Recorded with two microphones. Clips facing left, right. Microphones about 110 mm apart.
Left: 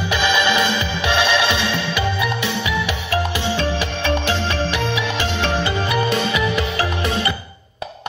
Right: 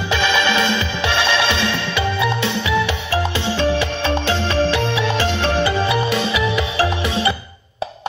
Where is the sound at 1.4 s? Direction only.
15° left (ahead or behind).